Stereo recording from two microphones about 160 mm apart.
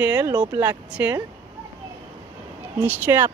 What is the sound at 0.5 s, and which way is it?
Speech, 10° right (ahead or behind).